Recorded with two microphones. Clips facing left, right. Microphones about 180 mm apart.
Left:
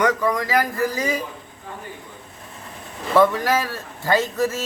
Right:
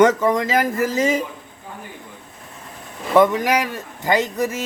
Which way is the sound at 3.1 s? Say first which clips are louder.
Right 2 dB; 20° right (ahead or behind).